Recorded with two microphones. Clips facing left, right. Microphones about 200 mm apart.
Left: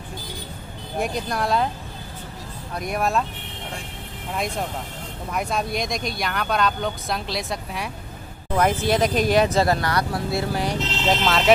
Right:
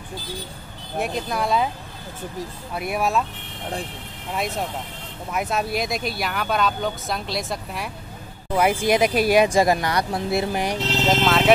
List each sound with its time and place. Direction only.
0.9 s speech: centre (ahead or behind)
2.7 s speech: 5° right (ahead or behind)
5.3 s speech: 5° right (ahead or behind)
11.1 s speech: centre (ahead or behind)